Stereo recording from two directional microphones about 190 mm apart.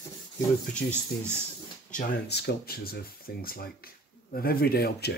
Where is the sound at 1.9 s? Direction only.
40° left (ahead or behind).